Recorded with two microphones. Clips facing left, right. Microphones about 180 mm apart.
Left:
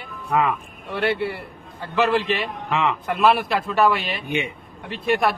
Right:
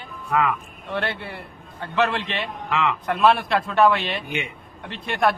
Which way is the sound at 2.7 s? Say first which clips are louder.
Left 1 dB; 20° left (ahead or behind).